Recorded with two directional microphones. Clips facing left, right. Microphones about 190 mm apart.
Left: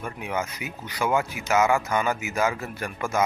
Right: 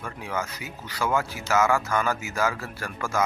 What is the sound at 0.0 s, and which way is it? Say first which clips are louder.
Speech: left 2 dB; 20° left (ahead or behind).